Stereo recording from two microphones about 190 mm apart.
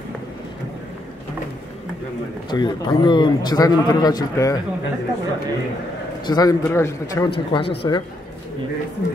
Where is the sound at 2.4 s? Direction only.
25° left (ahead or behind).